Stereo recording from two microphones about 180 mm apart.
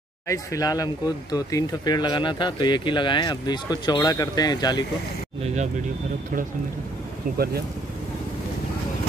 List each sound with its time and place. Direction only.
0.3 s speech: 20° left (ahead or behind)
7.3 s speech: 60° right (ahead or behind)